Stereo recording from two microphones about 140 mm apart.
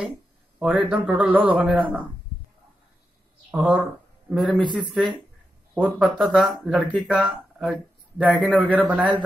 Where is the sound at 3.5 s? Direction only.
10° right (ahead or behind).